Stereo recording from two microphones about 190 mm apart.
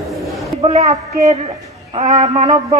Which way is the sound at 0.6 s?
35° right (ahead or behind).